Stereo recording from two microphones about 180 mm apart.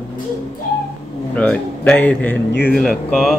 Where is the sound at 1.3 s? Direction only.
5° left (ahead or behind).